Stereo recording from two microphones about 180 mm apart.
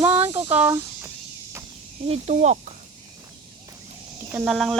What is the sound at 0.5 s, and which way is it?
Speech, 10° right (ahead or behind).